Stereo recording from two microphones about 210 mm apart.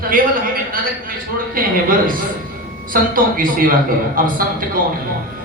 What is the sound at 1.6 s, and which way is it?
Speech, 40° right (ahead or behind).